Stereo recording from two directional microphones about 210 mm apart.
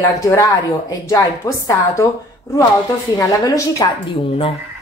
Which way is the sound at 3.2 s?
15° left (ahead or behind).